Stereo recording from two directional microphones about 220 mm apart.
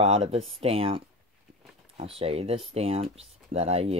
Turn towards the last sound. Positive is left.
turn(degrees=-25)  # may be behind; listen again after turning